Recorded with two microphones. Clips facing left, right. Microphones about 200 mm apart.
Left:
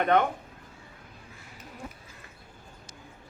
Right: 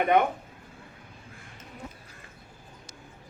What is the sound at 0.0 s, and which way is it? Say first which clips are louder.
Speech: right 1 dB; 10° right (ahead or behind).